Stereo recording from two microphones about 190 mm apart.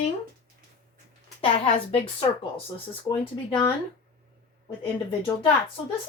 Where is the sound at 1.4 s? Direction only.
30° left (ahead or behind).